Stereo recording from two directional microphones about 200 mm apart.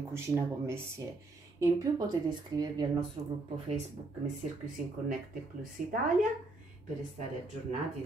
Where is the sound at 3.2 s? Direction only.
30° right (ahead or behind).